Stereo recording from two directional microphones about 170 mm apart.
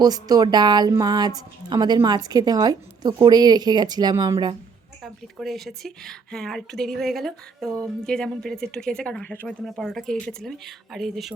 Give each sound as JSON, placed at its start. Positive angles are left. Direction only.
{"t": 0.0, "sound": "a woman's voice", "side_deg": -25}
{"t": 5.0, "sound": "speech", "side_deg": 0}